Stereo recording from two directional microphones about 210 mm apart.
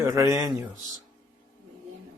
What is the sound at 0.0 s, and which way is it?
Speech, 15° right (ahead or behind).